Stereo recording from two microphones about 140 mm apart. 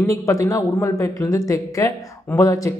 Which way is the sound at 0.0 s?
20° left (ahead or behind).